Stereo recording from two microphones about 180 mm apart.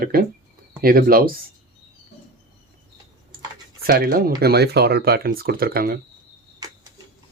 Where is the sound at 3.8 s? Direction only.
60° right (ahead or behind).